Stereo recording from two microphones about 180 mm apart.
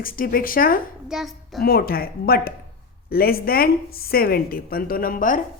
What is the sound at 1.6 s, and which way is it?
A woman's voice, 55° left (ahead or behind).